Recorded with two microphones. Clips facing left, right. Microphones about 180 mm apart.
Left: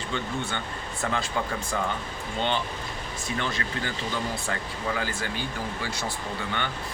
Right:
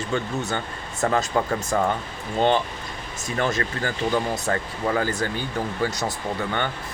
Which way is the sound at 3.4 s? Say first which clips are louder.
Right 8 dB; 45° right (ahead or behind).